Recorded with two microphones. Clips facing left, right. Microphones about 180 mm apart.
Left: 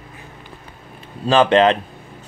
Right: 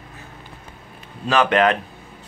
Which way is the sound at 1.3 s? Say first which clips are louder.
Left 4 dB; 30° left (ahead or behind).